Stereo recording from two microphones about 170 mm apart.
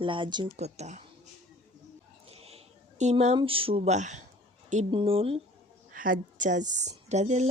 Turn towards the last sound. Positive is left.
turn(degrees=-40)  # may be behind; listen again after turning